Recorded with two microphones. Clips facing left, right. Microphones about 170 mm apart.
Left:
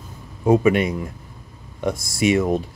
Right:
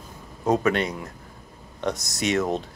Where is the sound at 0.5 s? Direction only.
10° left (ahead or behind).